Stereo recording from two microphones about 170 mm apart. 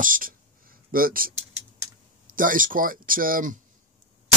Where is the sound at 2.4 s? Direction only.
55° right (ahead or behind).